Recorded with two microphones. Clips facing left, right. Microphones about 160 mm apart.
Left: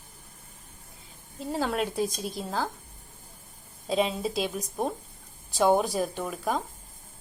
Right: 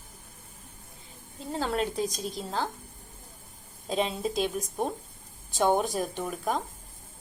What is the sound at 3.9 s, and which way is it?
A woman's voice, 5° left (ahead or behind).